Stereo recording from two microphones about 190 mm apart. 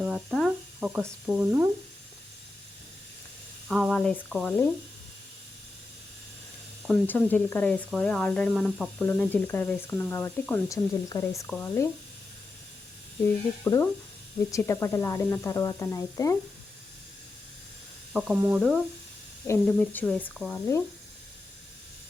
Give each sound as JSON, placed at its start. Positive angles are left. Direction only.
{"t": 0.0, "sound": "speech", "side_deg": -5}
{"t": 3.7, "sound": "speech", "side_deg": 0}
{"t": 6.8, "sound": "speech", "side_deg": 10}
{"t": 13.2, "sound": "speech", "side_deg": 15}
{"t": 18.1, "sound": "speech", "side_deg": -5}
{"t": 19.5, "sound": "speech", "side_deg": 10}